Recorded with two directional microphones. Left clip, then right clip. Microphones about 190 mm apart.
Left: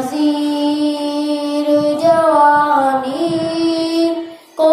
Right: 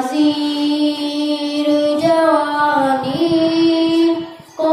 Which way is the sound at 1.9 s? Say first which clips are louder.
Left 2 dB; 10° left (ahead or behind).